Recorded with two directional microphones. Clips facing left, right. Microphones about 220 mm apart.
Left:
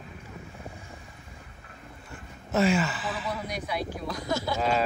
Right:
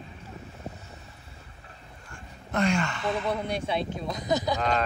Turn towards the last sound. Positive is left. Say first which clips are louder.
# left 1 dB
turn(degrees=5)  # may be behind; listen again after turning